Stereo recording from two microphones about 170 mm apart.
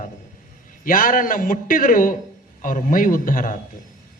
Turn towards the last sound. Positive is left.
turn(degrees=55)  # may be behind; listen again after turning